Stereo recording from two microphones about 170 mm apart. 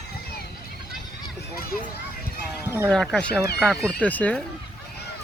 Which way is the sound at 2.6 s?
15° right (ahead or behind).